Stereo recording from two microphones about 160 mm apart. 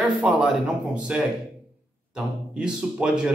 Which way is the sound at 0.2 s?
5° right (ahead or behind).